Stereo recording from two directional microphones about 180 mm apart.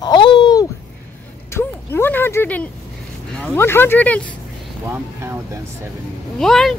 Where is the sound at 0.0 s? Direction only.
25° left (ahead or behind).